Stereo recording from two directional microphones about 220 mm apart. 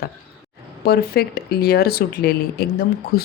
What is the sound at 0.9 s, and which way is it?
Speech, 45° left (ahead or behind).